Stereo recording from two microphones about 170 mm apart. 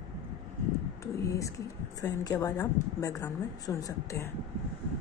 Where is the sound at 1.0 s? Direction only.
20° left (ahead or behind).